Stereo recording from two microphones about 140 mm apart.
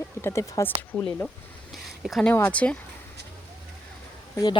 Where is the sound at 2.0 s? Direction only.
Centre (ahead or behind).